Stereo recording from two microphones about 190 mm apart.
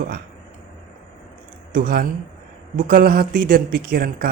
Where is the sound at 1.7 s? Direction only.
50° right (ahead or behind).